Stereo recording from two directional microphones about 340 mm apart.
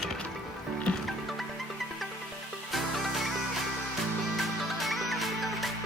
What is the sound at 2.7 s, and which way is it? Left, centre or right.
Music, centre.